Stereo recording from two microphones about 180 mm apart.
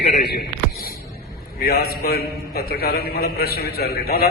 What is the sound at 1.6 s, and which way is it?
A man's voice, 60° left (ahead or behind).